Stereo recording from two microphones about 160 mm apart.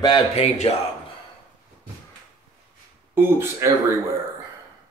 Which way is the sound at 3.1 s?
15° right (ahead or behind).